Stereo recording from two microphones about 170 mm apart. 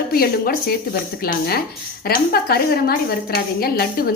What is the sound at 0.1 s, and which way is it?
A woman's voice, 65° left (ahead or behind).